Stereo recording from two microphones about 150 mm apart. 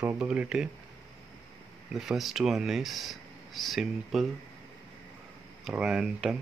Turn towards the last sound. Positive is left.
turn(degrees=-5)  # may be behind; listen again after turning